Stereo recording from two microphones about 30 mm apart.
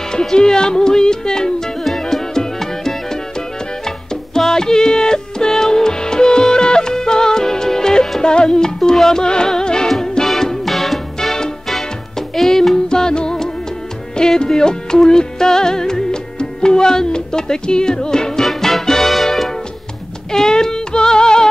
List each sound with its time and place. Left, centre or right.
0.1 s music: left
1.9 s music: centre
12.4 s music: centre
12.7 s music: left
18.4 s music: centre
20.2 s female singing: centre